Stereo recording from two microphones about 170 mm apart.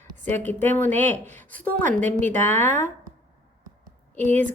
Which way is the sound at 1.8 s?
50° right (ahead or behind).